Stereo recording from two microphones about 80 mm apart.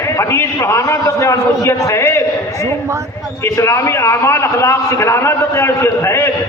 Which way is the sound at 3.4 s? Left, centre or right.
Left.